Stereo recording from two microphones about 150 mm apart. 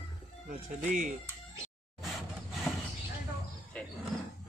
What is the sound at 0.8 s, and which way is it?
Speech, 60° right (ahead or behind).